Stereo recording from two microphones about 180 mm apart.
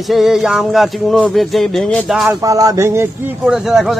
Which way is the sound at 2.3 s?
20° right (ahead or behind).